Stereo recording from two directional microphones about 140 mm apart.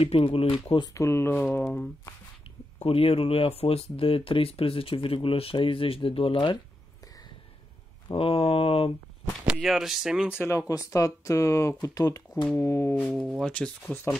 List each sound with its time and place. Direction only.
0.0 s speech: 40° left (ahead or behind)
0.9 s speech: 20° left (ahead or behind)
2.8 s speech: 45° left (ahead or behind)
8.1 s speech: 40° left (ahead or behind)
9.5 s speech: centre (ahead or behind)
10.9 s speech: 20° left (ahead or behind)
13.0 s speech: 5° left (ahead or behind)